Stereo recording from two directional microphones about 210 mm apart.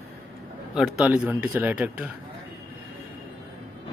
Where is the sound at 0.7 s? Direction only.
5° right (ahead or behind).